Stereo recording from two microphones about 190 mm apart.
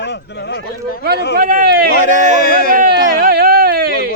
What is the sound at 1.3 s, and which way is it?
Speech, 50° right (ahead or behind).